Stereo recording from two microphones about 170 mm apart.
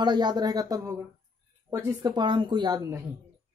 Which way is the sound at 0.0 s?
25° right (ahead or behind).